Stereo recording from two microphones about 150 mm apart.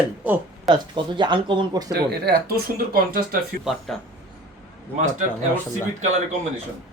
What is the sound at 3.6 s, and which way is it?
Speech, centre (ahead or behind).